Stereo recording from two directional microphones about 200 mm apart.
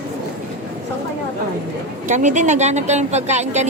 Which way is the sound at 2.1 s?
40° right (ahead or behind).